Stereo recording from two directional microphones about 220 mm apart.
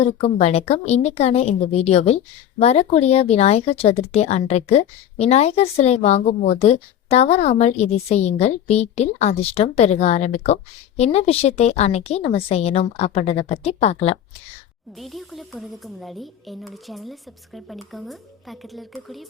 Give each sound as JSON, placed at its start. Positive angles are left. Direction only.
{"t": 0.0, "sound": "a woman's voice", "side_deg": 30}
{"t": 14.9, "sound": "speech", "side_deg": 0}